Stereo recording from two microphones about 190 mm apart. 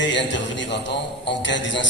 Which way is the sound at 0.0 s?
70° left (ahead or behind).